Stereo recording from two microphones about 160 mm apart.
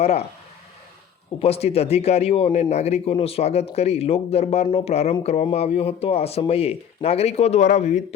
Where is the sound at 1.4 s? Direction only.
40° left (ahead or behind).